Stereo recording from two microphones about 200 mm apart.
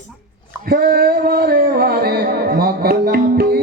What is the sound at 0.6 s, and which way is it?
Music, 50° right (ahead or behind).